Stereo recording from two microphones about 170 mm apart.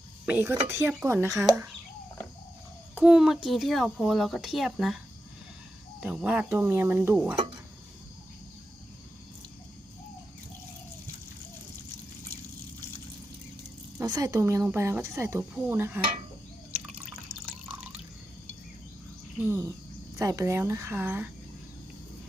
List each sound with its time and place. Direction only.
0.3 s speech: 10° right (ahead or behind)
2.9 s speech: 5° right (ahead or behind)
6.0 s speech: 5° right (ahead or behind)
14.0 s speech: 20° right (ahead or behind)
19.4 s speech: 15° right (ahead or behind)